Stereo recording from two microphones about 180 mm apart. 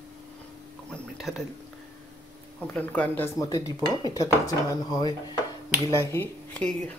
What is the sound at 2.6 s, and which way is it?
Speech, 10° left (ahead or behind).